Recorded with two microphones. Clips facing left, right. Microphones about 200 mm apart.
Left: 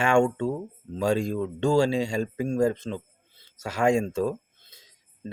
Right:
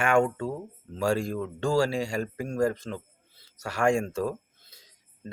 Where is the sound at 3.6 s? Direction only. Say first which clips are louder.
Left 2 dB; 20° left (ahead or behind).